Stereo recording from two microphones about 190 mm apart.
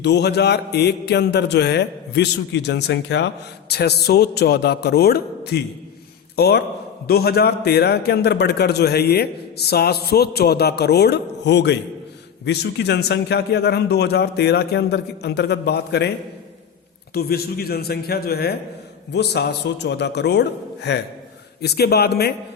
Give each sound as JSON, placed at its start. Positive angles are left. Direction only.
{"t": 0.0, "sound": "a man's voice", "side_deg": 60}
{"t": 17.2, "sound": "a man's voice", "side_deg": 55}